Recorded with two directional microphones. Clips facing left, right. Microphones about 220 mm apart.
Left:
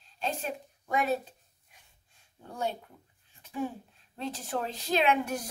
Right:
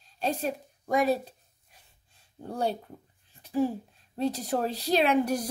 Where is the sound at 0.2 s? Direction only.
40° right (ahead or behind).